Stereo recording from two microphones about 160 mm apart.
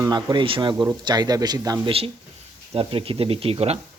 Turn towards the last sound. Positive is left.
turn(degrees=-40)  # may be behind; listen again after turning